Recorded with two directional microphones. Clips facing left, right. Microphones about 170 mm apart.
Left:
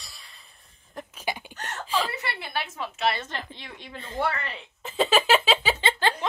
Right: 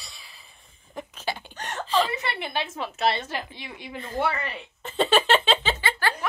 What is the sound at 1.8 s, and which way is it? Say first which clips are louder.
Chuckle: right 4 dB; 10° left (ahead or behind).